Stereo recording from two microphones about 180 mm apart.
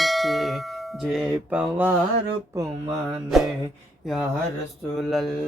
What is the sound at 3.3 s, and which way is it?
Speech, centre (ahead or behind).